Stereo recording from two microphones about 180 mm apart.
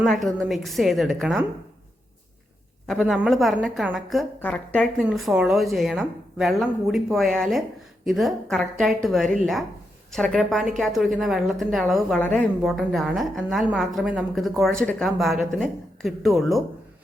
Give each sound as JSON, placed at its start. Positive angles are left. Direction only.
{"t": 0.0, "sound": "a woman's voice", "side_deg": 0}
{"t": 2.8, "sound": "a woman's voice", "side_deg": 0}